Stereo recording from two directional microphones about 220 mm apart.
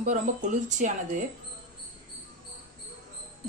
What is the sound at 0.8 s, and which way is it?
Speech, 35° right (ahead or behind).